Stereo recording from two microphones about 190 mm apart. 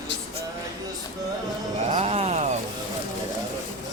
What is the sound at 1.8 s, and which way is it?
Music, 30° right (ahead or behind).